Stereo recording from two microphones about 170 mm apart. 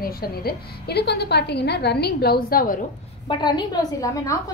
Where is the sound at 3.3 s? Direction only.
25° left (ahead or behind).